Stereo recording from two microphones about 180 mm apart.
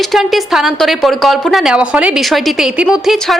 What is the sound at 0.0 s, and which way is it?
Speech, centre (ahead or behind).